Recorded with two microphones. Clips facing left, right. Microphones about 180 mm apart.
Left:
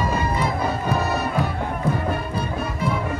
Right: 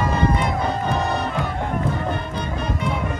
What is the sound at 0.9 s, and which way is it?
Music, 5° left (ahead or behind).